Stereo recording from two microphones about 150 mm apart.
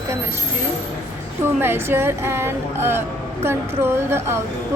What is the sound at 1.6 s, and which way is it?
Speech, 15° right (ahead or behind).